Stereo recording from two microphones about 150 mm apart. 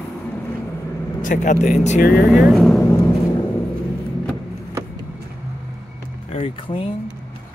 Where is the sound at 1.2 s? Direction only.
60° left (ahead or behind).